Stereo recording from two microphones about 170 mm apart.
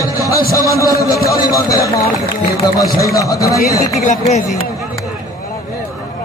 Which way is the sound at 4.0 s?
45° left (ahead or behind).